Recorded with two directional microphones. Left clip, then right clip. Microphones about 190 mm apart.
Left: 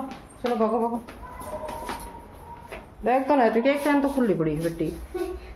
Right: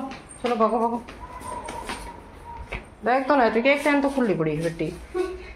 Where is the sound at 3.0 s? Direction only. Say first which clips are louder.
Right 1 dB; 20° left (ahead or behind).